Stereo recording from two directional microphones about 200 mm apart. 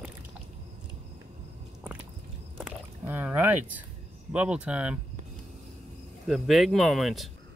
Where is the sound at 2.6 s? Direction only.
5° right (ahead or behind).